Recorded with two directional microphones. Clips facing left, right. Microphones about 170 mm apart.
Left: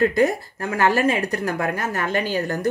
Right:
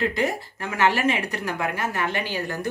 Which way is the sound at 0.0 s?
45° left (ahead or behind).